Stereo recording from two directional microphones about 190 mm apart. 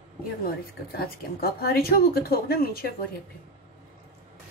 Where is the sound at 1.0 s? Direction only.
55° left (ahead or behind).